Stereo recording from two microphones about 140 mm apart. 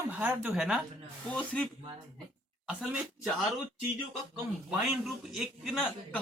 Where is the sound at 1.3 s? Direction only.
10° left (ahead or behind).